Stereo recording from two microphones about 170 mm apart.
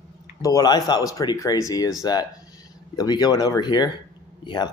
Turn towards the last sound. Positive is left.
turn(degrees=25)  # may be behind; listen again after turning